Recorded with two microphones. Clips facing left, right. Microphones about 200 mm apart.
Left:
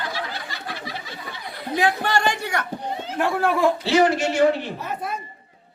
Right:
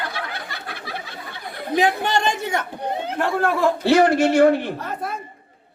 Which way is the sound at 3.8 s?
55° right (ahead or behind).